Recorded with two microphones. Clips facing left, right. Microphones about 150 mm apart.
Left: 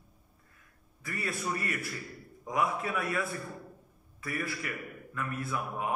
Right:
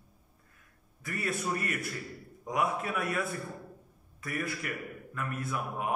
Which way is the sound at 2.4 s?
45° right (ahead or behind).